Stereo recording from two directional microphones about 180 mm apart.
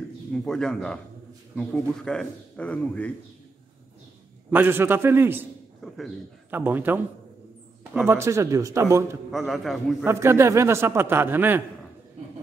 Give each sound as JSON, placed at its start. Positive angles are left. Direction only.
{"t": 0.3, "sound": "speech", "side_deg": 5}
{"t": 4.5, "sound": "a man's voice", "side_deg": -10}
{"t": 6.5, "sound": "a man's voice", "side_deg": -10}
{"t": 9.3, "sound": "speech", "side_deg": 0}
{"t": 10.0, "sound": "a man's voice", "side_deg": -15}